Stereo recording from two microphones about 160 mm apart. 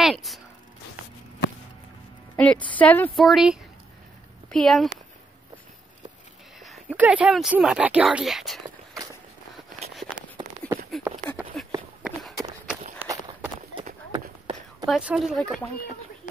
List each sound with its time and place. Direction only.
0.0 s a sound: centre (ahead or behind)
2.3 s a woman's voice: 10° left (ahead or behind)
3.3 s speech: centre (ahead or behind)
6.6 s a sound: centre (ahead or behind)
7.0 s speech: 10° right (ahead or behind)
8.6 s walk: 25° right (ahead or behind)
9.9 s a sound: centre (ahead or behind)
11.1 s a sound: 20° right (ahead or behind)
12.0 s walk: centre (ahead or behind)
13.0 s walk: 10° right (ahead or behind)
13.7 s clip-clop: 30° right (ahead or behind)
14.9 s speech: 5° right (ahead or behind)